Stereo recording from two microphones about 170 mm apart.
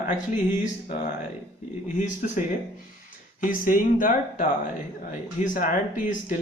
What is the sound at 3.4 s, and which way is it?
Speech, 55° left (ahead or behind).